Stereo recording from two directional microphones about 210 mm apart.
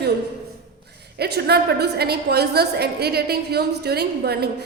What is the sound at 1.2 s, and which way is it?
A woman's voice, 50° right (ahead or behind).